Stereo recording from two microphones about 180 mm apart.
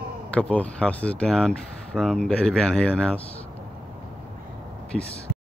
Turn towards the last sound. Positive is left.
turn(degrees=0)  # may be behind; listen again after turning